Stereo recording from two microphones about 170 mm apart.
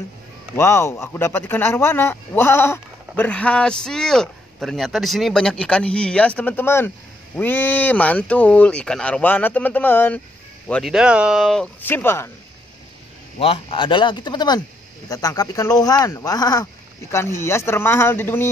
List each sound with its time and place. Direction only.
0.6 s speech: 15° left (ahead or behind)
10.7 s speech: centre (ahead or behind)
13.4 s speech: 35° left (ahead or behind); by 18.5 s 15° left (ahead or behind)